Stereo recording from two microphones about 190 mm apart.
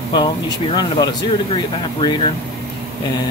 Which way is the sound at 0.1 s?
20° left (ahead or behind).